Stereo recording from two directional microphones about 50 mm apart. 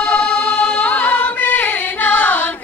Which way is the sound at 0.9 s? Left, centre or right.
Left.